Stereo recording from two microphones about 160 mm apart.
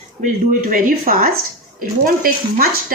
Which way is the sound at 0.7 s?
60° right (ahead or behind).